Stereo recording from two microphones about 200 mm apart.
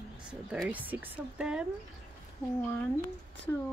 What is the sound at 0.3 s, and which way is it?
A woman's voice, 5° right (ahead or behind).